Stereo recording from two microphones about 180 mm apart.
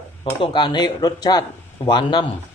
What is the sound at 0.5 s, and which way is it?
Speech, 25° left (ahead or behind).